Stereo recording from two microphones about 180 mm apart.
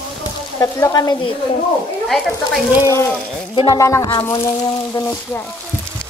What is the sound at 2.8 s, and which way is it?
Speech, 15° left (ahead or behind).